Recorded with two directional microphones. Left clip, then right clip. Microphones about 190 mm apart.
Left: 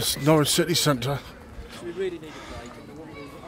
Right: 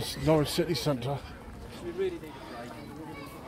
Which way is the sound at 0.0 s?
35° left (ahead or behind).